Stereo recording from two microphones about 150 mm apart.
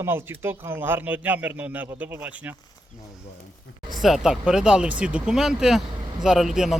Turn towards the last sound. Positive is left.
turn(degrees=0)  # may be behind; listen again after turning